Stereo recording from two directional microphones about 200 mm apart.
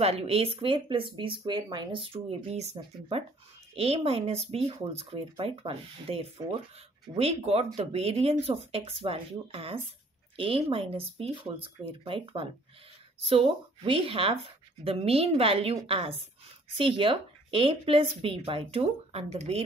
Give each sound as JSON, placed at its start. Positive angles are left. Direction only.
{"t": 0.0, "sound": "speech", "side_deg": -30}